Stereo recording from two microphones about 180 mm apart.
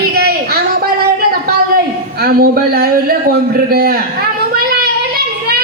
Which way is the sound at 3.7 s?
55° right (ahead or behind).